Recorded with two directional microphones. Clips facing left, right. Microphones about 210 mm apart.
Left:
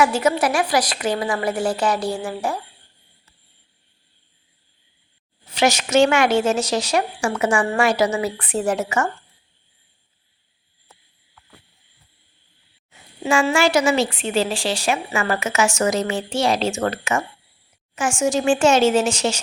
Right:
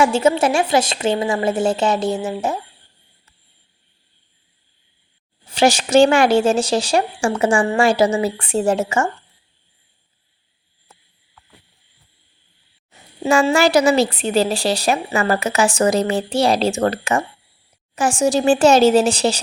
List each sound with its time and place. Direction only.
0.0 s a woman's voice: 25° right (ahead or behind)
5.5 s a woman's voice: 30° right (ahead or behind)
12.9 s speech: 40° right (ahead or behind)